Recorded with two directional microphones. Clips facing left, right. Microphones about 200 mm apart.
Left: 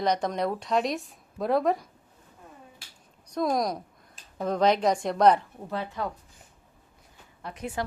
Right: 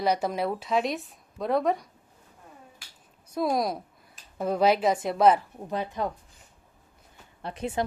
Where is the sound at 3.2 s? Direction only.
5° right (ahead or behind).